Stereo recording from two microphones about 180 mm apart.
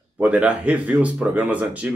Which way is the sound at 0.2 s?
10° right (ahead or behind).